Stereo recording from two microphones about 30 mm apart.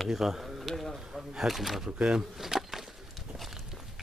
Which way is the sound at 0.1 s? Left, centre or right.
Centre.